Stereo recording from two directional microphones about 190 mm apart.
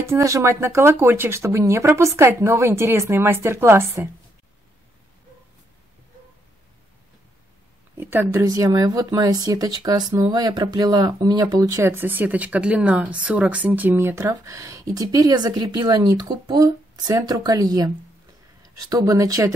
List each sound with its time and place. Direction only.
0.0 s speech: 15° right (ahead or behind)
8.0 s speech: 10° right (ahead or behind)